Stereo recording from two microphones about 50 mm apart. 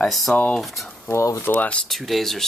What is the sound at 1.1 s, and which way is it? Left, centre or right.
Speech, left.